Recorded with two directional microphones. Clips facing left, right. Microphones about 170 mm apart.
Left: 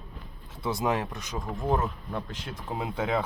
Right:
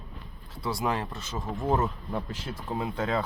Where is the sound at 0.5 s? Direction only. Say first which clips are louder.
Left 2 dB; 20° left (ahead or behind).